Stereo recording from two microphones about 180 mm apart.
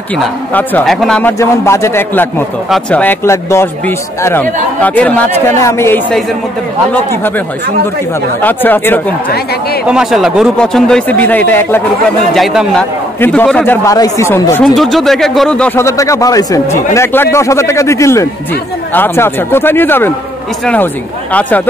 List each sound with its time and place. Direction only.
0.2 s a man's voice: 10° left (ahead or behind)
1.4 s speech: 15° left (ahead or behind)
8.4 s speech: 10° left (ahead or behind)
9.8 s a man's voice: 5° right (ahead or behind)
13.8 s speech: 20° left (ahead or behind)
14.8 s speech: centre (ahead or behind)